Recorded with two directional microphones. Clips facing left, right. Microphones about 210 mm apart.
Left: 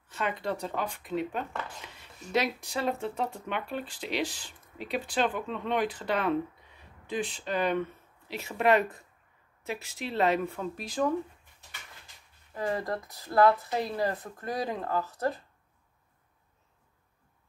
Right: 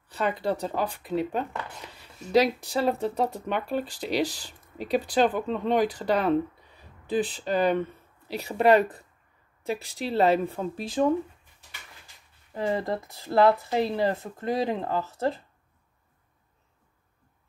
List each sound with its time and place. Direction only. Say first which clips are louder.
0.1 s speech: right 5 dB; 35° right (ahead or behind)
12.5 s speech: right 4 dB; 25° right (ahead or behind)